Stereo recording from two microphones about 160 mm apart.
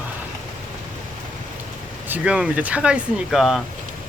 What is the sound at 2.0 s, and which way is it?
Speech, 10° right (ahead or behind).